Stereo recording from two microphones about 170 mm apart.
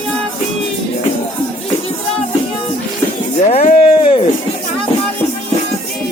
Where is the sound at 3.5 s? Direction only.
40° left (ahead or behind).